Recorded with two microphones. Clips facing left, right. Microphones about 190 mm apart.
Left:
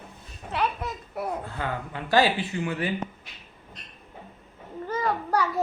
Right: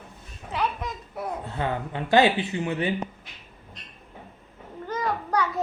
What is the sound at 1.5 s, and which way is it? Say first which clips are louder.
Speech: right 3 dB; 25° right (ahead or behind).